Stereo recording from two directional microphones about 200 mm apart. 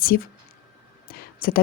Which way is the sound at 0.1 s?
50° left (ahead or behind).